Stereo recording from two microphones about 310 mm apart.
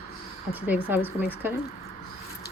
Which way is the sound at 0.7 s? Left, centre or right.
Centre.